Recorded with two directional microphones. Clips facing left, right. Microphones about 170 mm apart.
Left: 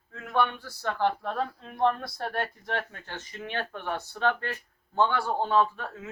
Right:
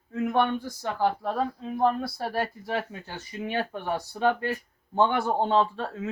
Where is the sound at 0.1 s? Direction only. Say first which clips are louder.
Right 15 dB; 15° right (ahead or behind).